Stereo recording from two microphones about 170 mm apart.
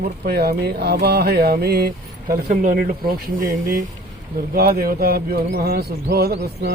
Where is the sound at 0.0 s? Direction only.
65° right (ahead or behind).